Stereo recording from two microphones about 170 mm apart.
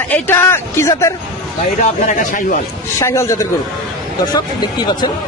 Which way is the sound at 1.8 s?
50° left (ahead or behind).